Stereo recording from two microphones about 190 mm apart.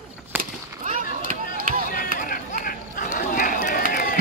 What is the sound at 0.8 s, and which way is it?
Chop, 45° right (ahead or behind).